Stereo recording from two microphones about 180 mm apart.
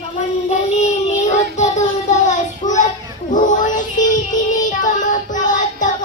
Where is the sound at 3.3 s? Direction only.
45° left (ahead or behind).